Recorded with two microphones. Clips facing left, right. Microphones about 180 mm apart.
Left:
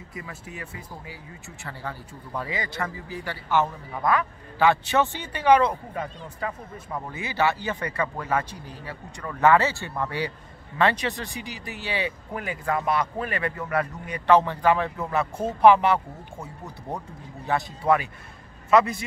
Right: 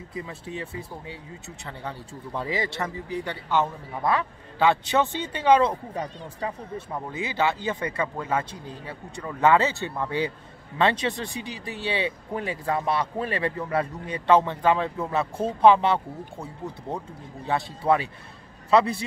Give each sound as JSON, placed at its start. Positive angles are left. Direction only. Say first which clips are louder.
{"t": 0.1, "sound": "speech", "louder": "right 5 dB", "side_deg": -30}
{"t": 17.5, "sound": "a man's voice", "louder": "even", "side_deg": -30}